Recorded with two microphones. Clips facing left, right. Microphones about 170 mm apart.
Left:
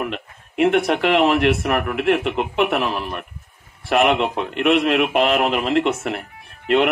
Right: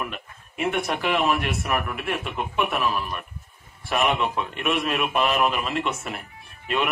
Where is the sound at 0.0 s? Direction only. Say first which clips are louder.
Left 6 dB; 65° left (ahead or behind).